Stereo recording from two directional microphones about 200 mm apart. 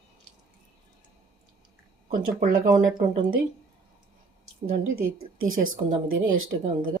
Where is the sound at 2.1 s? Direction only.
45° right (ahead or behind).